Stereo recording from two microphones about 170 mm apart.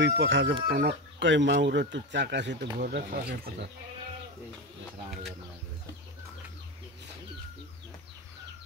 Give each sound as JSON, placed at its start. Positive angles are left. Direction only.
{"t": 0.0, "sound": "speech", "side_deg": -90}
{"t": 0.7, "sound": "speech", "side_deg": -70}